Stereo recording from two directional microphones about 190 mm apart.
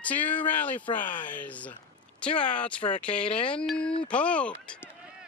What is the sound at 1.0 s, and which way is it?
Speech, 45° left (ahead or behind).